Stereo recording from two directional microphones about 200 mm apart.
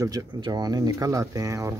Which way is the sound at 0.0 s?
20° right (ahead or behind).